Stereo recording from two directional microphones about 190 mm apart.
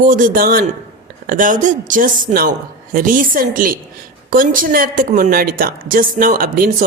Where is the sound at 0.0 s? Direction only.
45° right (ahead or behind).